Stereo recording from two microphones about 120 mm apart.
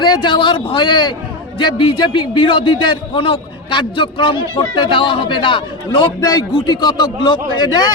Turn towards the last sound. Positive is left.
turn(degrees=35)  # may be behind; listen again after turning